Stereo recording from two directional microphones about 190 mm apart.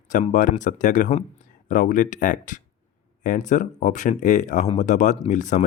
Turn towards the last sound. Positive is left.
turn(degrees=40)  # may be behind; listen again after turning